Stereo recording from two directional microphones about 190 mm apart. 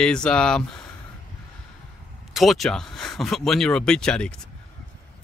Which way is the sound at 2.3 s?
Centre (ahead or behind).